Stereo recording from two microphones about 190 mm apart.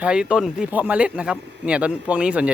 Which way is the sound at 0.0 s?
5° right (ahead or behind).